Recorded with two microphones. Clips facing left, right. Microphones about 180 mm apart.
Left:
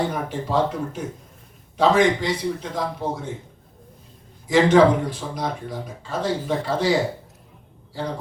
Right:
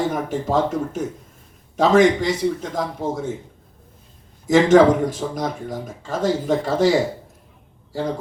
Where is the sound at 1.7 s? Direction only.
45° right (ahead or behind).